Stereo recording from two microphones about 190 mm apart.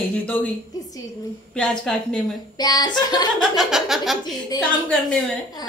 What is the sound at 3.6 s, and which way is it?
Speech, centre (ahead or behind).